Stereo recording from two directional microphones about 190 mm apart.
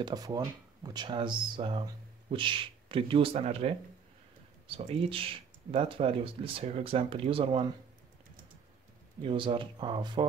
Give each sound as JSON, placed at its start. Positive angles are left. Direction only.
{"t": 0.0, "sound": "speech", "side_deg": -20}
{"t": 9.2, "sound": "speech", "side_deg": -25}